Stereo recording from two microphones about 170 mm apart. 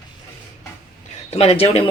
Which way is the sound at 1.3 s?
35° left (ahead or behind).